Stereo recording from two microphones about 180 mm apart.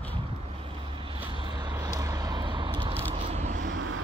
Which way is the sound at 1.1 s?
25° right (ahead or behind).